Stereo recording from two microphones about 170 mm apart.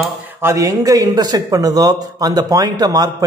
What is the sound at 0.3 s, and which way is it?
Speech, 15° right (ahead or behind).